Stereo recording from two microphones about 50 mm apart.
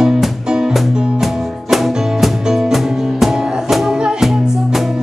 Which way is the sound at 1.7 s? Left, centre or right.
Centre.